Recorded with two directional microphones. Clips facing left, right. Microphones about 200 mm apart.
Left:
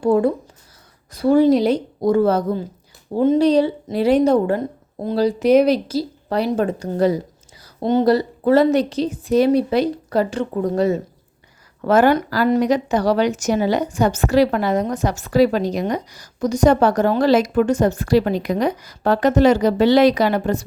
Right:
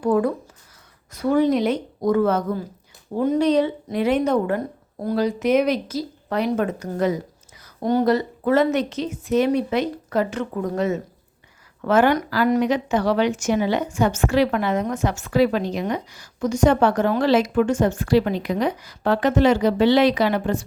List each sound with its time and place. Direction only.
0.0 s speech: 25° left (ahead or behind)
7.6 s a sound: 25° left (ahead or behind)
8.0 s speech: 35° left (ahead or behind)